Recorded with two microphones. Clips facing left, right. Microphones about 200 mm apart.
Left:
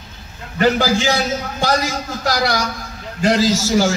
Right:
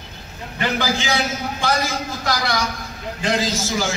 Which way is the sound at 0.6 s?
40° left (ahead or behind).